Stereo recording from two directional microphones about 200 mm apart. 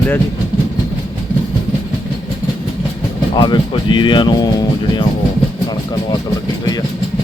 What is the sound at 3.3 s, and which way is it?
Speech, 20° left (ahead or behind).